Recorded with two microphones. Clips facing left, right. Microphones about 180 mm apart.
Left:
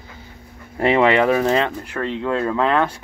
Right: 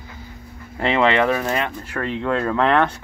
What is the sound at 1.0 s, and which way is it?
Speech, 20° left (ahead or behind).